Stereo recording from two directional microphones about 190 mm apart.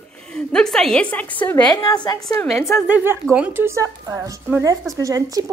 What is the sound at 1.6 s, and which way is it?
Speech, 20° left (ahead or behind).